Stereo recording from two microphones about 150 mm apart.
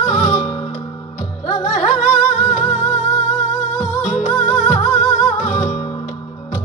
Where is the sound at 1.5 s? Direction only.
45° left (ahead or behind).